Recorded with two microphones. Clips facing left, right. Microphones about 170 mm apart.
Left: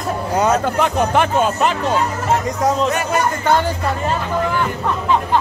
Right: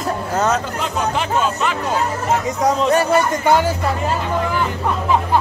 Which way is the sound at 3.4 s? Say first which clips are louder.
Even; 10° right (ahead or behind).